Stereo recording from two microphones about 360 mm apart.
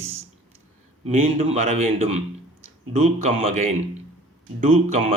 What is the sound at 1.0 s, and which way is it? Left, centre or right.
Speech, centre.